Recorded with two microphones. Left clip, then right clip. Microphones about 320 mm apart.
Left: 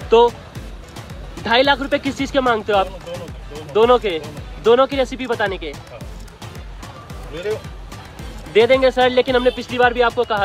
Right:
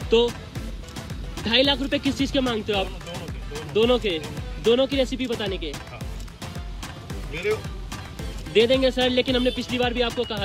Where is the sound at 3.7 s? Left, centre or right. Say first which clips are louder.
Left 7 dB; centre.